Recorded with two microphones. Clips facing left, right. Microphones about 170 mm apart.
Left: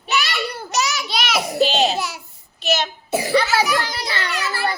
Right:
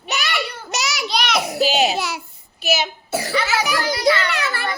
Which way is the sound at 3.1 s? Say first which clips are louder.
Left 4 dB; 15° left (ahead or behind).